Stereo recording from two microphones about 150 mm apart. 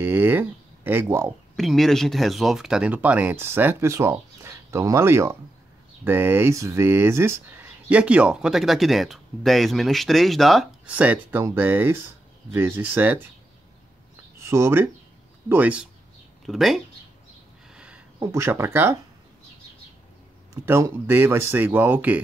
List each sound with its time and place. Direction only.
0.0 s speech: 15° right (ahead or behind)
1.6 s speech: centre (ahead or behind)
11.1 s speech: 15° right (ahead or behind)
14.4 s speech: 15° right (ahead or behind); by 16.8 s centre (ahead or behind)
17.7 s a sound: 5° right (ahead or behind)
18.2 s speech: 15° right (ahead or behind)
20.6 s speech: 15° right (ahead or behind)